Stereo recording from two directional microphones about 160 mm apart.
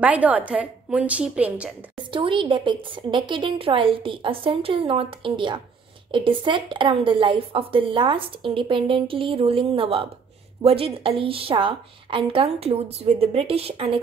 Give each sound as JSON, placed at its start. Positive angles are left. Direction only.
{"t": 0.0, "sound": "a woman's voice", "side_deg": -10}
{"t": 2.0, "sound": "speech", "side_deg": -30}